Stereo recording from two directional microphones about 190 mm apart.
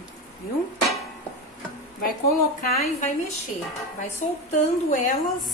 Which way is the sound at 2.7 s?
35° left (ahead or behind).